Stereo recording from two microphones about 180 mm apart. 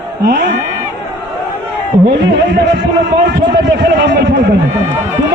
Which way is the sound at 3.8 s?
70° right (ahead or behind).